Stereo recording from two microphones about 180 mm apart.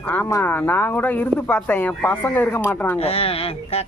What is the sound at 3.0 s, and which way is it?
Speech, 30° left (ahead or behind).